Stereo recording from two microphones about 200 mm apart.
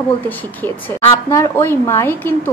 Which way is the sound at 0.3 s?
10° left (ahead or behind).